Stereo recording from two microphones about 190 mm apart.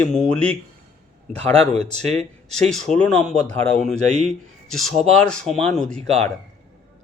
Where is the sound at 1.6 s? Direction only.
35° right (ahead or behind).